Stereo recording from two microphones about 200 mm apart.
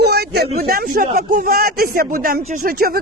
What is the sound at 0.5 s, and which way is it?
Speech, 45° right (ahead or behind).